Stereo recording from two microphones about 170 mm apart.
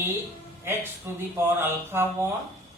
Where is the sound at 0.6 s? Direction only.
15° right (ahead or behind).